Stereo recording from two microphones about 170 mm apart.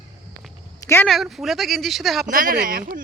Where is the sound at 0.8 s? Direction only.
15° left (ahead or behind).